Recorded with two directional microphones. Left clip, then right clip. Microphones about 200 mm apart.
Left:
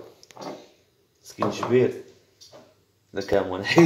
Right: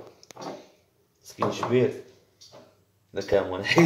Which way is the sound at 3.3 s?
10° left (ahead or behind).